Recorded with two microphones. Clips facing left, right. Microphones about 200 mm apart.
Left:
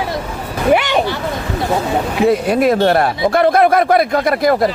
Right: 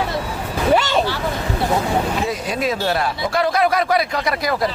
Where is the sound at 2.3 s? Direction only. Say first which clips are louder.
Left 9 dB; 60° left (ahead or behind).